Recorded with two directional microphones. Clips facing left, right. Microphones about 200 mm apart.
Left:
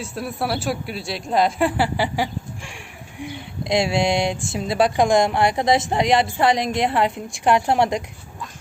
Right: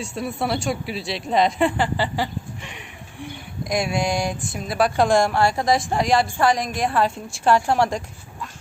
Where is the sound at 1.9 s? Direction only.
15° left (ahead or behind).